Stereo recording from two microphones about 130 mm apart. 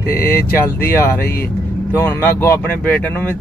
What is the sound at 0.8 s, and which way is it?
Speech, 20° left (ahead or behind).